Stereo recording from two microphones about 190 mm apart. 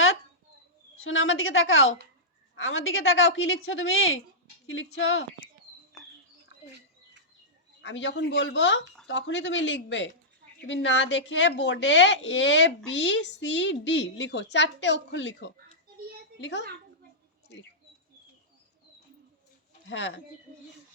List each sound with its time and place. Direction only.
1.0 s a woman's voice: 90° left
7.8 s a woman's voice: 75° left (ahead or behind)
19.9 s speech: 70° left (ahead or behind)